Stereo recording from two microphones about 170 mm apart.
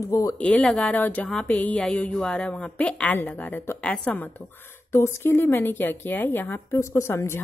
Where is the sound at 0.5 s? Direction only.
5° left (ahead or behind).